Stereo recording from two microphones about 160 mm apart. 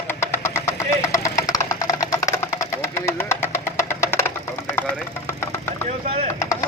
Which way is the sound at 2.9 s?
15° left (ahead or behind).